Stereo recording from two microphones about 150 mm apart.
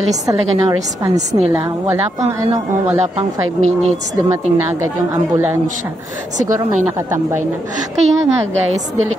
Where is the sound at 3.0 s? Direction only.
50° right (ahead or behind).